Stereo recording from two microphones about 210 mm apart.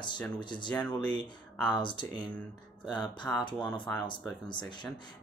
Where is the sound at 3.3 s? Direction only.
5° left (ahead or behind).